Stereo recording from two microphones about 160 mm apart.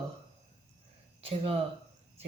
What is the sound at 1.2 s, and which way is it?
Speech, 35° right (ahead or behind).